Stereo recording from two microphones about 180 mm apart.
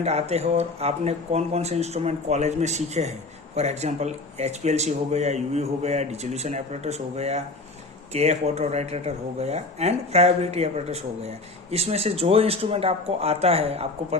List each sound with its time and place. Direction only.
0.0 s speech: 35° right (ahead or behind)